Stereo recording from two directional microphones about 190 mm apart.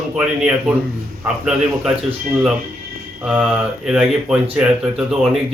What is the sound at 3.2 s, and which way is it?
Speech, 5° right (ahead or behind).